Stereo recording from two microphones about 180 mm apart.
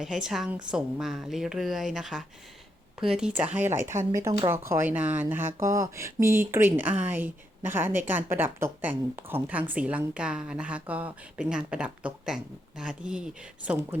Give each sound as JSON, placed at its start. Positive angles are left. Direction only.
{"t": 0.0, "sound": "a woman's voice", "side_deg": -5}